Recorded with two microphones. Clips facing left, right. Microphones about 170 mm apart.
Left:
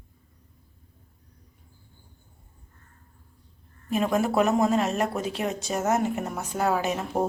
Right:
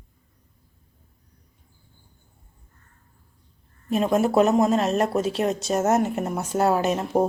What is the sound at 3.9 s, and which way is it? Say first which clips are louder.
A woman's voice: right 3 dB; 25° right (ahead or behind).